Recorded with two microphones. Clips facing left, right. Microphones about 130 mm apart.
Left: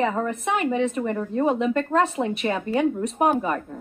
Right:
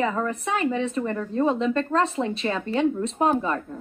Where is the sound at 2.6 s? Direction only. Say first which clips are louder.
Right 1 dB; 25° right (ahead or behind).